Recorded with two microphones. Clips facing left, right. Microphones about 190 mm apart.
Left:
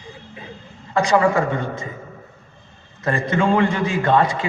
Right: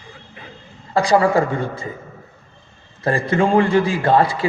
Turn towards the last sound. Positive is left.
turn(degrees=-30)  # may be behind; listen again after turning